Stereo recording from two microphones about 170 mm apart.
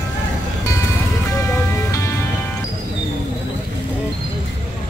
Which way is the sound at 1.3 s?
15° left (ahead or behind).